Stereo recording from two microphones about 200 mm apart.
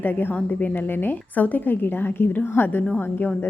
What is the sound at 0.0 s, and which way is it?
A woman's voice, 10° left (ahead or behind).